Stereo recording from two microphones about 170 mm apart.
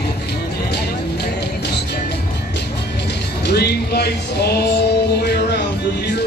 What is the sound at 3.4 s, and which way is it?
Music, 70° left (ahead or behind).